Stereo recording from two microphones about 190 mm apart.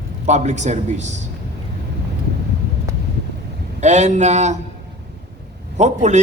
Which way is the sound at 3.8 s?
40° right (ahead or behind).